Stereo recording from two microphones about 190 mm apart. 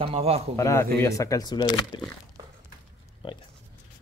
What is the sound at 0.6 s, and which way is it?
Speech, 15° left (ahead or behind).